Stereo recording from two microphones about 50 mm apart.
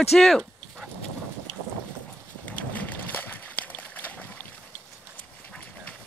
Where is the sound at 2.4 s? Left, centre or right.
Left.